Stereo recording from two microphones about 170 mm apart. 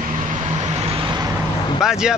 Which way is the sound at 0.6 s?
35° right (ahead or behind).